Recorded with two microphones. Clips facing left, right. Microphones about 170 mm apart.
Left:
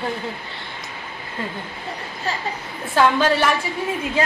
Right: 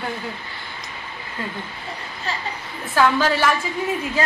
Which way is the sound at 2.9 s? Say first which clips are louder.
Left 1 dB; 20° left (ahead or behind).